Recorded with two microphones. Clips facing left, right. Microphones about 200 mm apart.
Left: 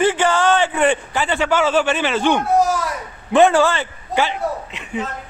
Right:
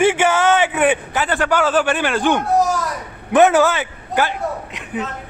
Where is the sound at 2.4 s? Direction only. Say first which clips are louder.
Even; centre (ahead or behind).